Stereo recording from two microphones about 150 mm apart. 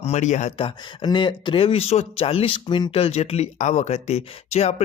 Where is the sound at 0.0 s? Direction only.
50° left (ahead or behind).